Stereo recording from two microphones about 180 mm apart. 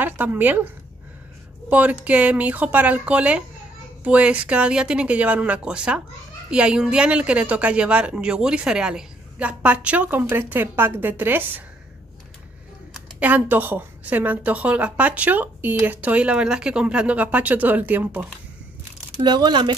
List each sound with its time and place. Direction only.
0.0 s a woman's voice: 10° right (ahead or behind)
1.7 s a woman's voice: 10° right (ahead or behind)
12.9 s a woman's voice: 10° right (ahead or behind)
19.2 s speech: 25° right (ahead or behind)